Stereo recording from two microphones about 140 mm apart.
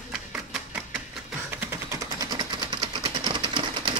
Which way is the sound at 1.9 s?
25° right (ahead or behind).